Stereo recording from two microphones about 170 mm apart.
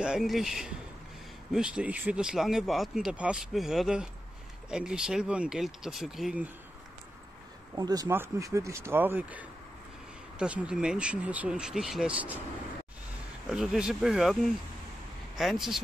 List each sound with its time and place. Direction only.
0.0 s speech: 5° right (ahead or behind)
7.7 s speech: 20° right (ahead or behind)
13.5 s speech: 5° right (ahead or behind)